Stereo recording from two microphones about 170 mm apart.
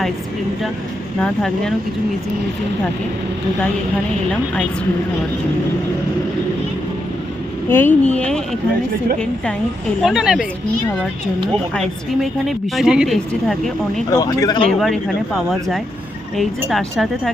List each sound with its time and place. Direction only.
1.2 s a woman's voice: 5° left (ahead or behind)
7.7 s speech: 10° left (ahead or behind)
10.0 s a woman's voice: centre (ahead or behind)
11.7 s a woman's voice: centre (ahead or behind)
14.1 s speech: 20° left (ahead or behind)
14.8 s a woman's voice: centre (ahead or behind)